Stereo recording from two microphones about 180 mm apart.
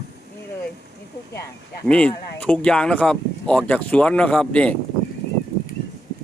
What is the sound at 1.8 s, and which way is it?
Speech, 5° left (ahead or behind).